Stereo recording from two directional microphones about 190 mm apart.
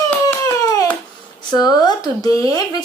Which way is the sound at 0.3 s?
20° left (ahead or behind).